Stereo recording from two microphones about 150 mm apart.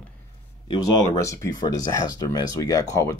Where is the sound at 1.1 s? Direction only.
20° left (ahead or behind).